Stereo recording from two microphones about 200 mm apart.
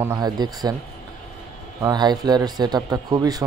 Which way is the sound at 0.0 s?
15° right (ahead or behind).